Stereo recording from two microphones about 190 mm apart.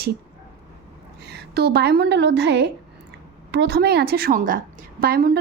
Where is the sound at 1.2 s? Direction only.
60° right (ahead or behind).